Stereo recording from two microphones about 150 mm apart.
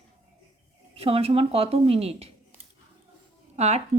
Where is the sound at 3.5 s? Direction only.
45° right (ahead or behind).